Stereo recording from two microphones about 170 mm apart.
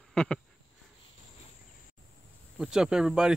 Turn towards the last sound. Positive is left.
turn(degrees=0)  # may be behind; listen again after turning